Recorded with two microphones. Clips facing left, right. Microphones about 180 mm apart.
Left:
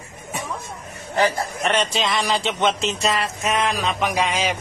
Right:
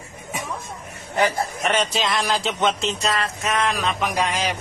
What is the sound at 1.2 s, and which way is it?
A man's voice, centre (ahead or behind).